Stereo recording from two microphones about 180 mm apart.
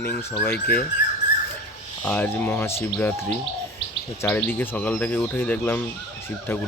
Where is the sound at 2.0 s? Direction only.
10° left (ahead or behind).